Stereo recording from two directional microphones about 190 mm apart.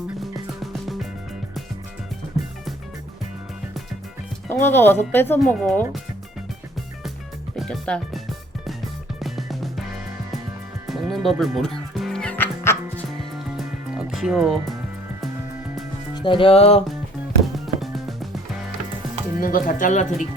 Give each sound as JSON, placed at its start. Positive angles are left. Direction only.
{"t": 0.2, "sound": "music", "side_deg": 0}
{"t": 4.4, "sound": "speech", "side_deg": 10}
{"t": 5.5, "sound": "speech", "side_deg": 0}
{"t": 7.5, "sound": "speech", "side_deg": 0}
{"t": 9.1, "sound": "music", "side_deg": 0}
{"t": 10.8, "sound": "music", "side_deg": 0}
{"t": 13.9, "sound": "music", "side_deg": -5}
{"t": 16.1, "sound": "speech", "side_deg": 25}
{"t": 17.4, "sound": "music", "side_deg": 0}
{"t": 19.4, "sound": "speech", "side_deg": 45}